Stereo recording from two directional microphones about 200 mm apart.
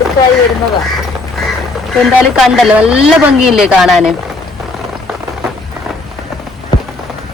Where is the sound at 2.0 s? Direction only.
Centre (ahead or behind).